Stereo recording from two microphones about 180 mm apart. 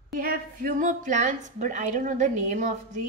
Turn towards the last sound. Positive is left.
turn(degrees=-40)  # may be behind; listen again after turning